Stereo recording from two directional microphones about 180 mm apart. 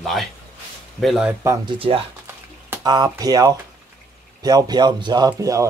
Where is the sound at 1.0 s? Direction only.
Centre (ahead or behind).